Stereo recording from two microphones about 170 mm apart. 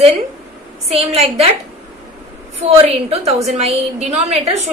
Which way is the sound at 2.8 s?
35° right (ahead or behind).